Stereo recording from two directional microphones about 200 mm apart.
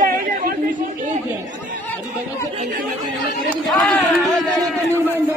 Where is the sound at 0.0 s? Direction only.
45° right (ahead or behind).